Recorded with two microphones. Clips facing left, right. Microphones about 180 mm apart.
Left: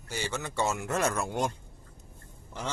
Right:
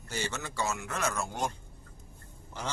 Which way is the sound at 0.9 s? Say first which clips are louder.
Left 5 dB; 50° left (ahead or behind).